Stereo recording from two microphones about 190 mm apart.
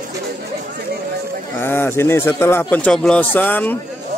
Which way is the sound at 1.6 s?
10° left (ahead or behind).